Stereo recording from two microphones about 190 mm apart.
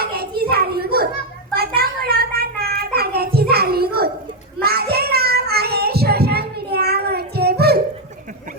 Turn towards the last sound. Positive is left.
turn(degrees=-55)  # may be behind; listen again after turning